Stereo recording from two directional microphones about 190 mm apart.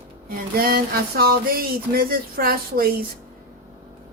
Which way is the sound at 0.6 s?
50° right (ahead or behind).